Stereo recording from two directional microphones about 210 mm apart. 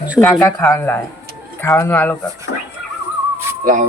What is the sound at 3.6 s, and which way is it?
Speech, 40° right (ahead or behind).